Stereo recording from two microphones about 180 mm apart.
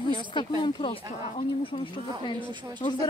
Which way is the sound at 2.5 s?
25° right (ahead or behind).